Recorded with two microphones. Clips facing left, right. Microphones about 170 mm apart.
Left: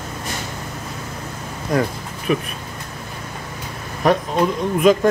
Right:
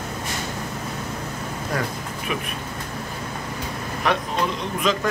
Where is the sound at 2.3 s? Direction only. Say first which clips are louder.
Left 9 dB; 35° left (ahead or behind).